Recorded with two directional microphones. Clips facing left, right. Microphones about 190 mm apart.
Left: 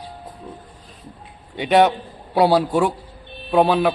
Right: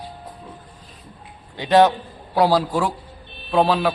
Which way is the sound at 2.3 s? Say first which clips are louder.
Left 2 dB; 25° left (ahead or behind).